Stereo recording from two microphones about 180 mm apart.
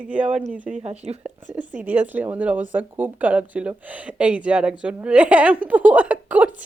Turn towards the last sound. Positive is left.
turn(degrees=-10)  # may be behind; listen again after turning